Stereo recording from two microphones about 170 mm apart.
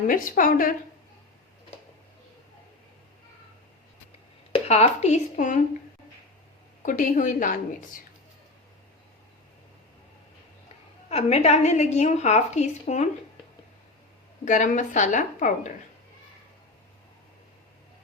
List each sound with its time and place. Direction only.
0.1 s a woman's voice: 55° left (ahead or behind)
4.7 s a woman's voice: 40° left (ahead or behind)
6.8 s a woman's voice: 50° left (ahead or behind)
11.1 s a woman's voice: 40° left (ahead or behind)
14.4 s a woman's voice: 50° left (ahead or behind)